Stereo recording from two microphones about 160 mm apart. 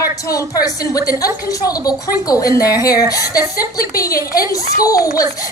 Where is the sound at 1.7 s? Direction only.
20° left (ahead or behind).